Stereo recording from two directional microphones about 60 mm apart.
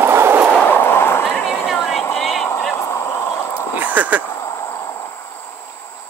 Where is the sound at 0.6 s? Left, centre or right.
Left.